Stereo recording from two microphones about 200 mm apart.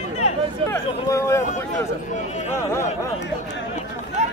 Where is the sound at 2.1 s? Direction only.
35° left (ahead or behind).